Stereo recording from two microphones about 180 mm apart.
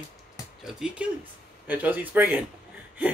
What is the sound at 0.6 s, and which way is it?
Speech, 5° right (ahead or behind).